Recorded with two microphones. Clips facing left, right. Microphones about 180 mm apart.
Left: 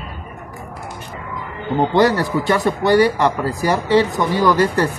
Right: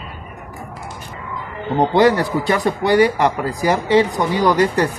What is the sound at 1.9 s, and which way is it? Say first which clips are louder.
Speech: right 1 dB; 20° right (ahead or behind).